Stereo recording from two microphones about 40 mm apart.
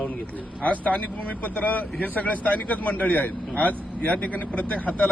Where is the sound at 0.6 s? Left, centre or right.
Left.